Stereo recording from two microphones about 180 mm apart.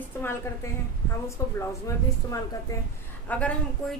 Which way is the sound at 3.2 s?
10° left (ahead or behind).